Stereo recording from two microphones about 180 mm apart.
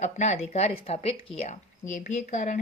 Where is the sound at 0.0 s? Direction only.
40° left (ahead or behind).